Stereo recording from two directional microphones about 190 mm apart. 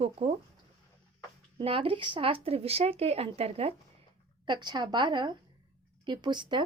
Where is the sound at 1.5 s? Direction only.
30° right (ahead or behind).